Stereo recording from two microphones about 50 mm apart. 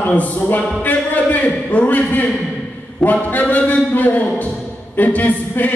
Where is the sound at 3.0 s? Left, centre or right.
Centre.